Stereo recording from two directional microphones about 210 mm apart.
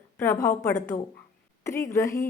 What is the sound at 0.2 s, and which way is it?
Speech, 15° left (ahead or behind).